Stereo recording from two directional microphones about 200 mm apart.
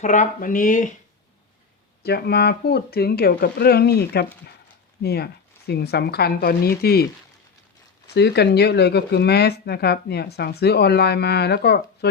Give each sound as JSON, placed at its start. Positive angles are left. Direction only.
{"t": 0.0, "sound": "speech", "side_deg": 40}
{"t": 2.0, "sound": "speech", "side_deg": 50}